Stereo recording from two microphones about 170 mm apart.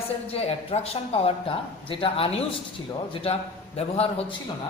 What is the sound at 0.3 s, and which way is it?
A man's voice, 35° left (ahead or behind).